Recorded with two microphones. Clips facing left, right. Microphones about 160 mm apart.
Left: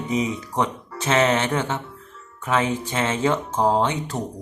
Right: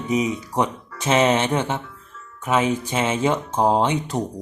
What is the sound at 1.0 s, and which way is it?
Music, 15° right (ahead or behind).